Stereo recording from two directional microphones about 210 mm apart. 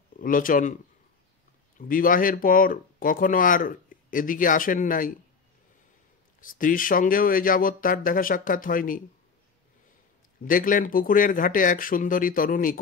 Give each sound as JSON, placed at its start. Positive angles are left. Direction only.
{"t": 0.2, "sound": "speech", "side_deg": 40}
{"t": 1.8, "sound": "speech", "side_deg": 40}
{"t": 6.4, "sound": "speech", "side_deg": 40}
{"t": 10.4, "sound": "speech", "side_deg": 40}